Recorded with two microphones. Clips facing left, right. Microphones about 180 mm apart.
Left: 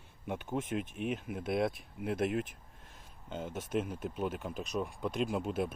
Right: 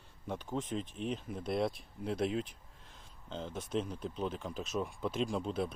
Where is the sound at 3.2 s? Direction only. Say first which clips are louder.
Left 2 dB; 10° left (ahead or behind).